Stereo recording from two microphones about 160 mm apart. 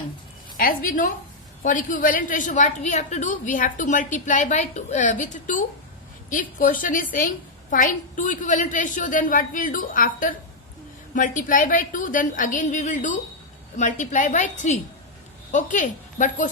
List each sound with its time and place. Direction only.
0.5 s a woman's voice: 60° left (ahead or behind)